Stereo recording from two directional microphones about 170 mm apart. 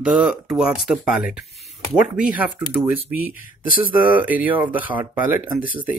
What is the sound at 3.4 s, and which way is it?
Speech, 55° left (ahead or behind).